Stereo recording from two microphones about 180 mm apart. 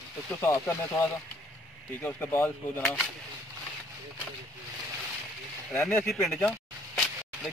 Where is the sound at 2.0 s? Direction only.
10° left (ahead or behind).